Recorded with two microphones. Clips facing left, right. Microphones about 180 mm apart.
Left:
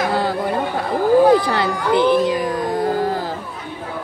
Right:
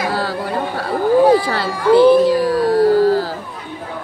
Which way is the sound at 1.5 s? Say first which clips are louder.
Right 4 dB; 20° left (ahead or behind).